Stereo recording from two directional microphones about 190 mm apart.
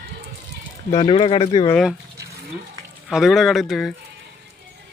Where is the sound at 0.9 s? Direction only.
25° left (ahead or behind).